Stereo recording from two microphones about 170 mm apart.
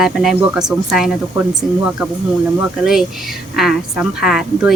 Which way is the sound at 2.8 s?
5° right (ahead or behind).